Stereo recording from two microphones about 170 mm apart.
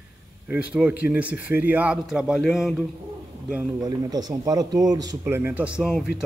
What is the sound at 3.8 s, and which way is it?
A man's voice, 20° right (ahead or behind).